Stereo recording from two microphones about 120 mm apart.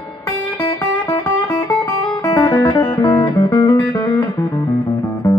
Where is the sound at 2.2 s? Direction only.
30° left (ahead or behind).